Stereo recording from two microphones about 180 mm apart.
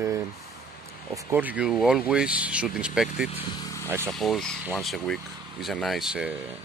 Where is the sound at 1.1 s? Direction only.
10° right (ahead or behind).